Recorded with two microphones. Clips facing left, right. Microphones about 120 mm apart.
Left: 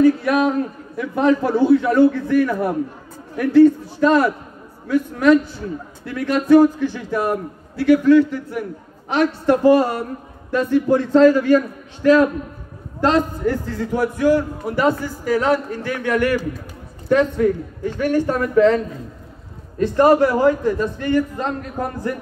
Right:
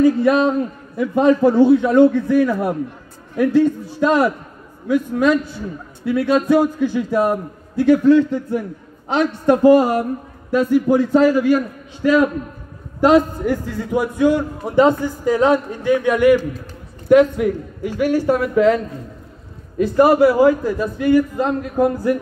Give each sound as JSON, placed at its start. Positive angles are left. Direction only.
{"t": 0.0, "sound": "a man's voice", "side_deg": -25}
{"t": 19.8, "sound": "a man's voice", "side_deg": -10}